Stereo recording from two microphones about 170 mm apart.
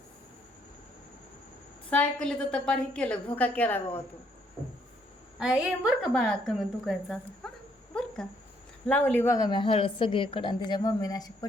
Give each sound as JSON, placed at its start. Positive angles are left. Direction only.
{"t": 1.9, "sound": "a woman's voice", "side_deg": 5}
{"t": 5.4, "sound": "a woman's voice", "side_deg": -5}
{"t": 7.9, "sound": "a sound", "side_deg": 5}
{"t": 8.9, "sound": "a woman's voice", "side_deg": 10}